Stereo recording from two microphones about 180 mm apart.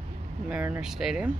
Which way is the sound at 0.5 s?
10° right (ahead or behind).